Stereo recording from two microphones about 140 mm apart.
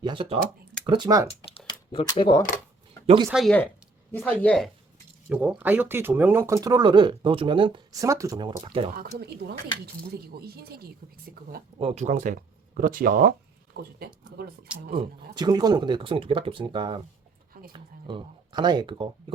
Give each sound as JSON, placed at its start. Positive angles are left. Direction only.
{"t": 0.0, "sound": "speech", "side_deg": -40}
{"t": 1.3, "sound": "a sound", "side_deg": 40}
{"t": 2.1, "sound": "speech", "side_deg": 35}
{"t": 3.2, "sound": "speech", "side_deg": 0}
{"t": 5.3, "sound": "speech", "side_deg": -10}
{"t": 7.9, "sound": "speech", "side_deg": -25}
{"t": 8.6, "sound": "speech", "side_deg": -40}
{"t": 9.8, "sound": "speech", "side_deg": -90}
{"t": 11.8, "sound": "speech", "side_deg": -50}
{"t": 15.0, "sound": "speech", "side_deg": -40}
{"t": 15.4, "sound": "speech", "side_deg": -30}